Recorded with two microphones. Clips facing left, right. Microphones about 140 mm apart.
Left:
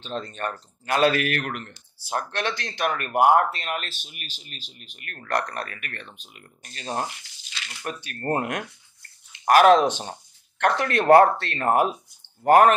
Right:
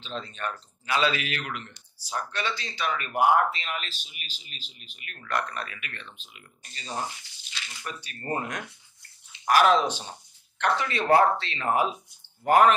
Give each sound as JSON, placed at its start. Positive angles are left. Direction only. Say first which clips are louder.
{"t": 0.0, "sound": "speech", "louder": "left 4 dB", "side_deg": 45}
{"t": 6.6, "sound": "speech", "louder": "left 4 dB", "side_deg": 65}